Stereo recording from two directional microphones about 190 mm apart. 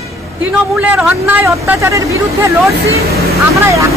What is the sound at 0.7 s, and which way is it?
Speech, 5° right (ahead or behind).